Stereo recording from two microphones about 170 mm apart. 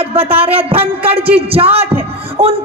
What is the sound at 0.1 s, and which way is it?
A man's voice, 35° right (ahead or behind).